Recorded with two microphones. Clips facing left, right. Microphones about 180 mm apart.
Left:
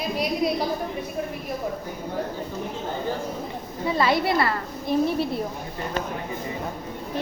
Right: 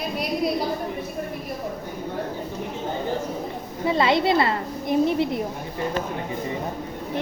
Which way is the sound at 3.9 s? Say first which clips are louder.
Right 2 dB; 25° right (ahead or behind).